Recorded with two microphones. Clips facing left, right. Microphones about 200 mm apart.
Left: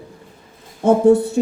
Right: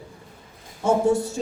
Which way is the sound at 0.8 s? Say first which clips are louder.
Left 7 dB; 60° left (ahead or behind).